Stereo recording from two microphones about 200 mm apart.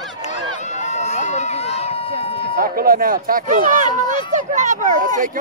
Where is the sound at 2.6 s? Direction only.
45° right (ahead or behind).